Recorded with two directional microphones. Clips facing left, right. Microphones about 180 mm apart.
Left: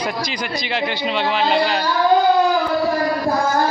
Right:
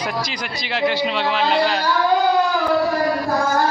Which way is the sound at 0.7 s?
Centre (ahead or behind).